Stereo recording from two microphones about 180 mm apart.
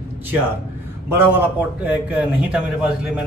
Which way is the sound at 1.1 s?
10° right (ahead or behind).